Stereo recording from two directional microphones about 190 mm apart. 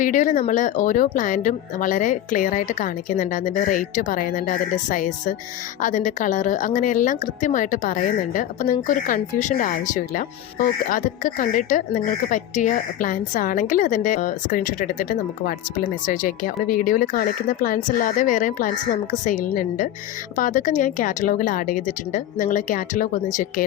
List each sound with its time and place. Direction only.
0.0 s a woman's voice: 45° left (ahead or behind)